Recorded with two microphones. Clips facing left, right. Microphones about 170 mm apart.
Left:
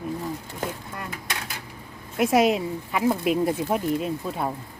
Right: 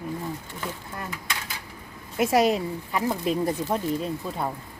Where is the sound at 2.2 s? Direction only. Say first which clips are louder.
Left 1 dB; centre (ahead or behind).